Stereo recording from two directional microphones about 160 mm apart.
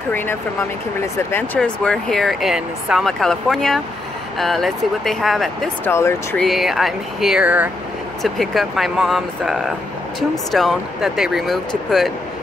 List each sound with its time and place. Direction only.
0.1 s speech: 15° left (ahead or behind)
5.9 s speech: 15° left (ahead or behind)
6.4 s speech: centre (ahead or behind)
8.2 s speech: centre (ahead or behind)